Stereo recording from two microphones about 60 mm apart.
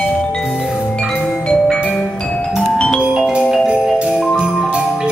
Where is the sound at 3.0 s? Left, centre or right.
Centre.